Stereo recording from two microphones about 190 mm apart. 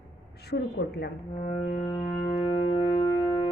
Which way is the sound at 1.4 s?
35° left (ahead or behind).